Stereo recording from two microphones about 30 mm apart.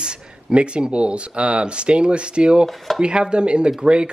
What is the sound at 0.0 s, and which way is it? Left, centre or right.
Speech, right.